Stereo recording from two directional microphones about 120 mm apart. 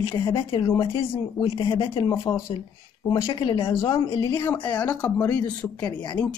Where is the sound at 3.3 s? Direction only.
45° left (ahead or behind).